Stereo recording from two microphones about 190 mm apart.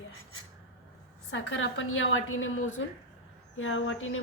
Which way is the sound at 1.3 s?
80° left.